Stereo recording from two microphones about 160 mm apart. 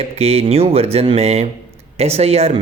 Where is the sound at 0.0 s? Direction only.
40° right (ahead or behind).